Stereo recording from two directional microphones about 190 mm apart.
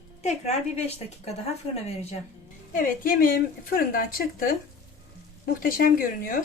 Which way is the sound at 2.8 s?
45° left (ahead or behind).